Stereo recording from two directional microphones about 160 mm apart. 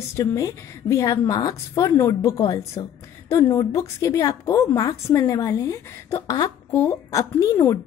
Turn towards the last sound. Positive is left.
turn(degrees=15)  # may be behind; listen again after turning